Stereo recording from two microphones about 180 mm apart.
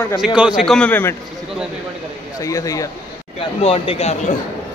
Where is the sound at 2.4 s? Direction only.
20° left (ahead or behind).